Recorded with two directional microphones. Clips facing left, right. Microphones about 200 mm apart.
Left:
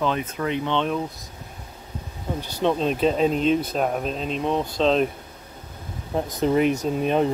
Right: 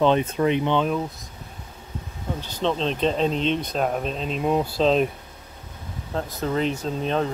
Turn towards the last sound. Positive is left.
turn(degrees=15)  # may be behind; listen again after turning